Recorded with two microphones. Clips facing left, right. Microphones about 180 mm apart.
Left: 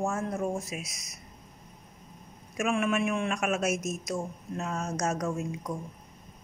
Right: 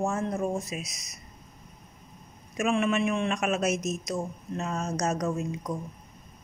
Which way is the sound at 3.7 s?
50° left (ahead or behind).